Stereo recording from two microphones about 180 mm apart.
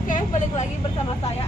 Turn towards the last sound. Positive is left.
turn(degrees=40)  # may be behind; listen again after turning